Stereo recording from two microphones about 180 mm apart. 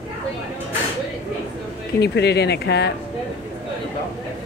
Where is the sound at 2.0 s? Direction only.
70° left (ahead or behind).